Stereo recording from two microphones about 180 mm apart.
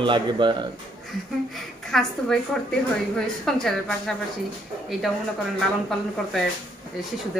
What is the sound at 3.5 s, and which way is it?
Speech, centre (ahead or behind).